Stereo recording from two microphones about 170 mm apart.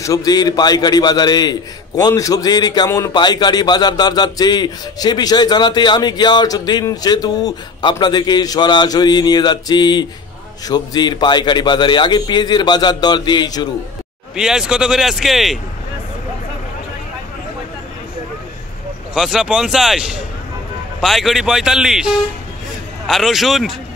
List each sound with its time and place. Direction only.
0.0 s a man's voice: 20° left (ahead or behind)
14.3 s a man's voice: 5° right (ahead or behind)
19.1 s a man's voice: centre (ahead or behind)